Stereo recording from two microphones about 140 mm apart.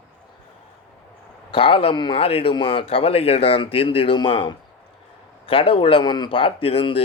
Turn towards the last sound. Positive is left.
turn(degrees=40)  # may be behind; listen again after turning